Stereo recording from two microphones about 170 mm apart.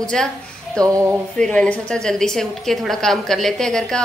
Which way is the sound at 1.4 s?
5° left (ahead or behind).